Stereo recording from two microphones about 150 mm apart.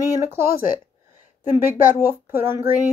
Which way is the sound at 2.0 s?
15° right (ahead or behind).